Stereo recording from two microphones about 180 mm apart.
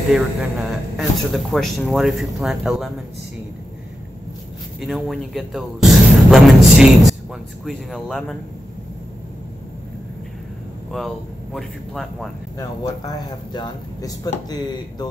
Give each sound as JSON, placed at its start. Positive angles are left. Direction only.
{"t": 0.1, "sound": "speech", "side_deg": 0}
{"t": 4.7, "sound": "speech", "side_deg": 0}
{"t": 10.9, "sound": "speech", "side_deg": 0}
{"t": 12.5, "sound": "speech", "side_deg": 20}